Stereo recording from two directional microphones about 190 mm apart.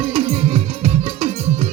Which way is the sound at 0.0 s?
35° right (ahead or behind).